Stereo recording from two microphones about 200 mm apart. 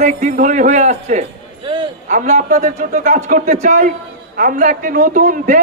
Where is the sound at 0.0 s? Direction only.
40° right (ahead or behind).